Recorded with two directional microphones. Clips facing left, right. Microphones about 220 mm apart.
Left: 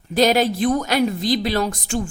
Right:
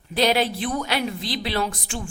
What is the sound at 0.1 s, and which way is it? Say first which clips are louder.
A woman's voice: left 4 dB; 45° left (ahead or behind).